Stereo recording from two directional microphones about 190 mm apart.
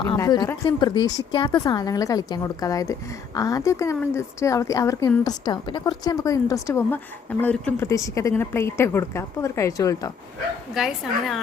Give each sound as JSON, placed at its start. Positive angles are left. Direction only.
{"t": 0.0, "sound": "speech", "side_deg": 20}
{"t": 10.8, "sound": "a woman's voice", "side_deg": 0}